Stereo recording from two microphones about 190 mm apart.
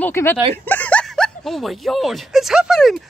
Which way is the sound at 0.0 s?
10° left (ahead or behind).